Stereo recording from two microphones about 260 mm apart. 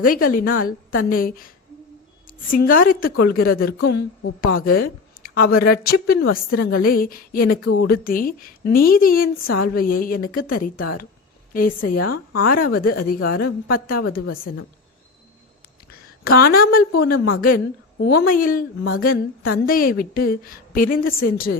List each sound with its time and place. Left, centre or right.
0.0 s a woman's voice: left
2.5 s a woman's voice: left
7.6 s a woman's voice: left
7.9 s a woman's voice: left
11.5 s a woman's voice: left
12.0 s a woman's voice: left
12.5 s a woman's voice: left
15.9 s a woman's voice: left